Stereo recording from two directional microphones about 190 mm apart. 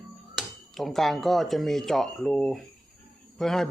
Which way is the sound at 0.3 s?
Centre (ahead or behind).